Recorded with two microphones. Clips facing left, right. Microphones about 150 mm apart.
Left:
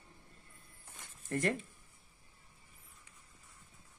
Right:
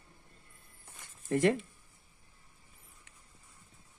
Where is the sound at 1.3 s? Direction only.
85° right.